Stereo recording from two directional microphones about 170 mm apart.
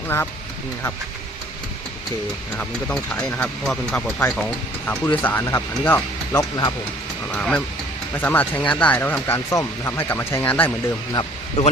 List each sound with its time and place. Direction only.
0.1 s speech: 15° left (ahead or behind)
2.6 s speech: 10° left (ahead or behind)
11.1 s speech: 25° left (ahead or behind)